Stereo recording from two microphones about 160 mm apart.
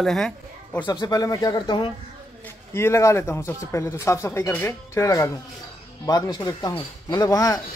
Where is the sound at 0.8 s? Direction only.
25° left (ahead or behind).